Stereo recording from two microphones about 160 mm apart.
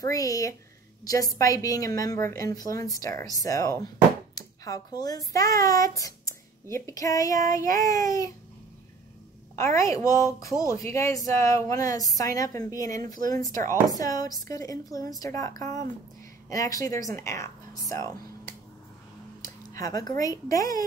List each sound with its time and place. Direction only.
0.0 s a woman's voice: 20° left (ahead or behind)
9.6 s a woman's voice: 20° left (ahead or behind)
19.4 s speech: 20° left (ahead or behind)